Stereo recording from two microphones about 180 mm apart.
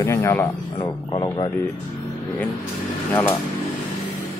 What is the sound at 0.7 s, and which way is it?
Speech, 25° left (ahead or behind).